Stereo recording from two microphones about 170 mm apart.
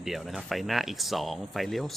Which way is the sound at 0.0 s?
Centre (ahead or behind).